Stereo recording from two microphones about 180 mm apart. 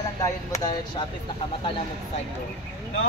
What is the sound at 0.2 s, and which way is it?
Speech, 20° left (ahead or behind).